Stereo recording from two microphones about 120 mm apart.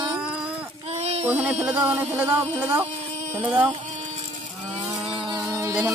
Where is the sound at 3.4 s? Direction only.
10° right (ahead or behind).